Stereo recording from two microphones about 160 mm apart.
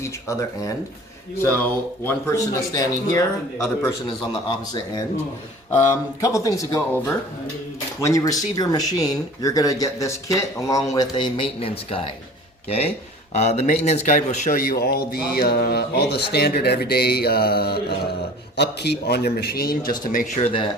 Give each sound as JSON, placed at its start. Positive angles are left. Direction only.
{"t": 0.3, "sound": "speech", "side_deg": 20}
{"t": 6.2, "sound": "speech", "side_deg": 20}
{"t": 18.5, "sound": "speech", "side_deg": 90}
{"t": 20.4, "sound": "speech", "side_deg": 35}